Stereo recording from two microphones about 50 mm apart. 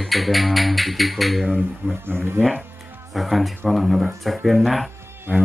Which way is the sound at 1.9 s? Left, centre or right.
Right.